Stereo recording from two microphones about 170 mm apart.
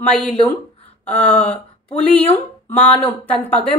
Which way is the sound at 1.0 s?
10° left (ahead or behind).